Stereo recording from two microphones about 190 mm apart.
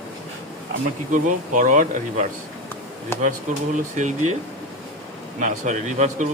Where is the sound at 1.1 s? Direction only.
40° right (ahead or behind).